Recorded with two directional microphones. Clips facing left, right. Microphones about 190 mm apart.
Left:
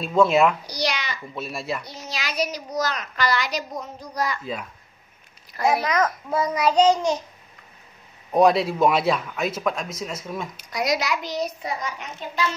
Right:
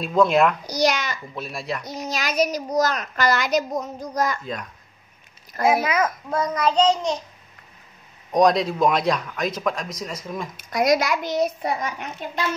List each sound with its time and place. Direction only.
0.0 s a man's voice: centre (ahead or behind)
0.7 s babbling: 45° right (ahead or behind)
1.3 s a man's voice: centre (ahead or behind)
1.9 s a child's voice: 45° right (ahead or behind)
5.6 s a child's voice: 5° right (ahead or behind)
6.3 s child singing: 10° left (ahead or behind)
8.3 s a man's voice: 5° left (ahead or behind)
10.6 s a child's voice: 50° right (ahead or behind)